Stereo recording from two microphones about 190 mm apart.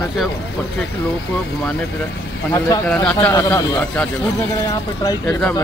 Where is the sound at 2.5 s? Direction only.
20° left (ahead or behind).